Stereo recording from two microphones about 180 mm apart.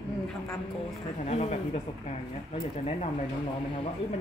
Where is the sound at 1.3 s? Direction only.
35° left (ahead or behind).